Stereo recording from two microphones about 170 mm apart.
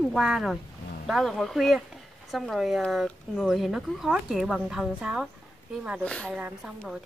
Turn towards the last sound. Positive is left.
turn(degrees=-5)  # may be behind; listen again after turning